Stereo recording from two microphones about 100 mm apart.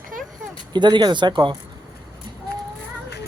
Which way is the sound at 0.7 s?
50° right (ahead or behind).